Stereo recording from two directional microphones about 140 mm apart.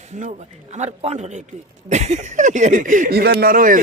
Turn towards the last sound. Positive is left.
turn(degrees=-80)